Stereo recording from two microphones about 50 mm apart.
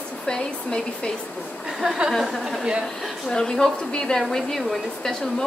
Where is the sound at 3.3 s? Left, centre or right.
Centre.